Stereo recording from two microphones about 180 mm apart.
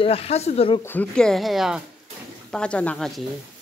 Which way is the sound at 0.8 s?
10° left (ahead or behind).